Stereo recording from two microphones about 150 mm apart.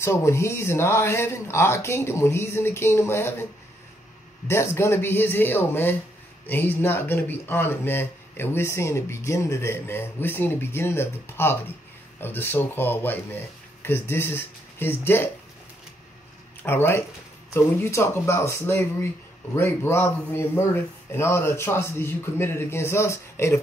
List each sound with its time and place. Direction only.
0.0 s speech: 20° left (ahead or behind)
4.5 s speech: 15° left (ahead or behind)
16.6 s speech: 15° left (ahead or behind)